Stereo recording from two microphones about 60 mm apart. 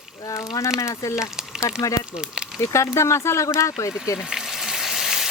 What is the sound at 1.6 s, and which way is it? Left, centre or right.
Speech, left.